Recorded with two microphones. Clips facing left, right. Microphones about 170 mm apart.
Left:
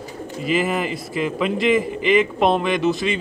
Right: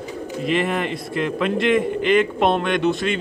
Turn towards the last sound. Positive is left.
turn(degrees=0)  # may be behind; listen again after turning